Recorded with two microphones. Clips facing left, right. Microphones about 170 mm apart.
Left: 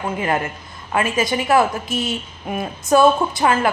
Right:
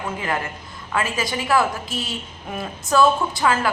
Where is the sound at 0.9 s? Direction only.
20° left (ahead or behind).